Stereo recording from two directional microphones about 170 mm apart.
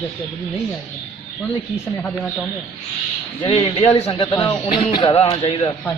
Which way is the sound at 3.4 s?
30° left (ahead or behind).